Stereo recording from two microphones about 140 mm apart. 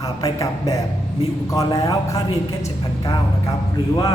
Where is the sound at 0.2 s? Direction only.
25° left (ahead or behind).